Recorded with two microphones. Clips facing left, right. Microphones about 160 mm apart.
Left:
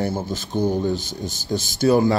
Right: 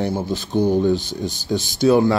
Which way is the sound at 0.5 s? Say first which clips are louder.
Right 3 dB; 15° right (ahead or behind).